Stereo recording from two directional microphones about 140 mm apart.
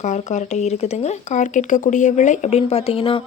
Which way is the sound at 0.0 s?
55° left (ahead or behind).